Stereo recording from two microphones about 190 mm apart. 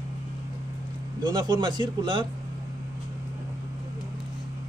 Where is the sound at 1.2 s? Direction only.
20° right (ahead or behind).